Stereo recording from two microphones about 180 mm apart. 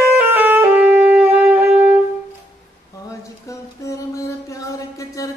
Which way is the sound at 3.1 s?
15° left (ahead or behind).